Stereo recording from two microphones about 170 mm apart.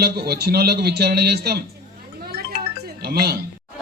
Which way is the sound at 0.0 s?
70° right (ahead or behind).